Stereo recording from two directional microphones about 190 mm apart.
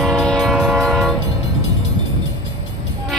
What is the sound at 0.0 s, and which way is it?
Train, 5° left (ahead or behind).